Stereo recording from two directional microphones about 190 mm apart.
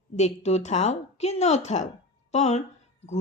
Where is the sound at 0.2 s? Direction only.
35° left (ahead or behind).